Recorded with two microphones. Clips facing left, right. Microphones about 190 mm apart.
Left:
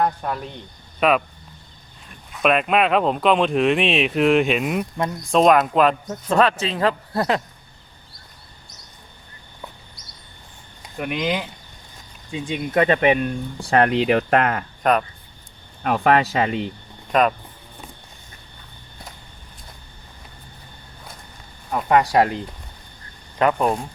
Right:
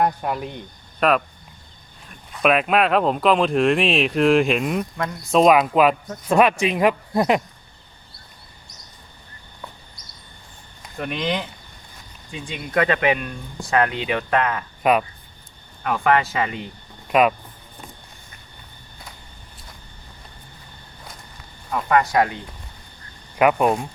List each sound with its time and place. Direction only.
0.0 s speech: 10° right (ahead or behind)
2.3 s speech: centre (ahead or behind)
10.9 s speech: 10° left (ahead or behind)
12.3 s speech: 20° left (ahead or behind)
13.6 s speech: 35° left (ahead or behind)
14.1 s speech: 50° left (ahead or behind)
14.8 s speech: 5° right (ahead or behind)
15.8 s speech: 40° left (ahead or behind)
17.1 s speech: 5° right (ahead or behind)
21.7 s speech: 30° left (ahead or behind)
23.4 s speech: 10° right (ahead or behind)